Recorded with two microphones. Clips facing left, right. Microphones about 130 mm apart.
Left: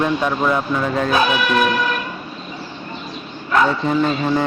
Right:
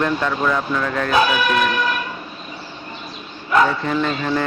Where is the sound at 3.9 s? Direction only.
20° left (ahead or behind).